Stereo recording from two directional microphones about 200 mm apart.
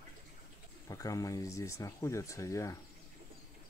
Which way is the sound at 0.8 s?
15° left (ahead or behind).